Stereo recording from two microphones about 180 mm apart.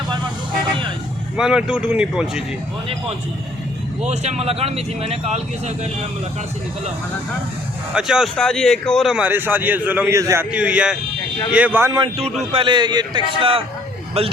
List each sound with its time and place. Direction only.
1.4 s a man's voice: 5° right (ahead or behind)
4.0 s speech: 40° right (ahead or behind)
7.9 s a man's voice: 5° right (ahead or behind)
10.5 s a man's voice: 5° right (ahead or behind); by 14.3 s 35° right (ahead or behind)